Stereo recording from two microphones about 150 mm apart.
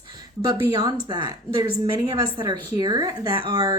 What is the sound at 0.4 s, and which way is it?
Speech, 30° right (ahead or behind).